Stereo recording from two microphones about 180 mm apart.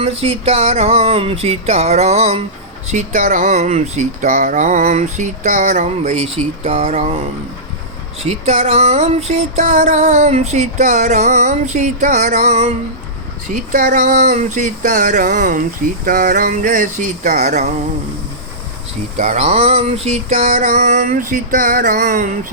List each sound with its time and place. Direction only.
0.0 s music: 35° right (ahead or behind)
2.9 s speech: 45° right (ahead or behind)
8.2 s music: 40° right (ahead or behind)
13.5 s speech: 50° right (ahead or behind)
19.1 s speech: 45° right (ahead or behind)
19.6 s speech: 35° right (ahead or behind)